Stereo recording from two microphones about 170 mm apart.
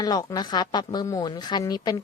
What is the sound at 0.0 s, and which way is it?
Speech, 20° left (ahead or behind).